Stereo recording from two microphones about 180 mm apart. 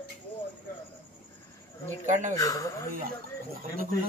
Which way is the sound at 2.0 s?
45° right (ahead or behind).